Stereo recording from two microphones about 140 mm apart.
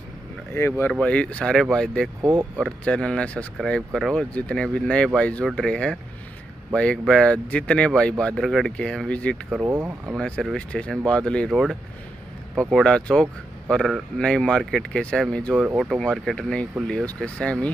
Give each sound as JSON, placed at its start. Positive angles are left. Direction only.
{"t": 0.6, "sound": "speech", "side_deg": 20}
{"t": 9.5, "sound": "speech", "side_deg": -5}
{"t": 9.8, "sound": "speech", "side_deg": -15}
{"t": 10.1, "sound": "speech", "side_deg": 5}
{"t": 15.6, "sound": "speech", "side_deg": -5}
{"t": 16.0, "sound": "speech", "side_deg": 5}